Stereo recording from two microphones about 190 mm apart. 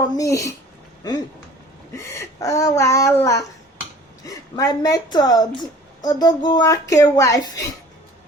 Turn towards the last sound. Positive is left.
turn(degrees=20)  # may be behind; listen again after turning